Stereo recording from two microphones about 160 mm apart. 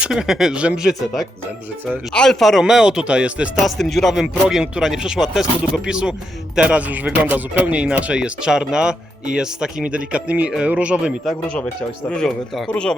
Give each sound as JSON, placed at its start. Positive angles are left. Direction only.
{"t": 0.0, "sound": "speech", "side_deg": -5}
{"t": 11.4, "sound": "speech", "side_deg": 5}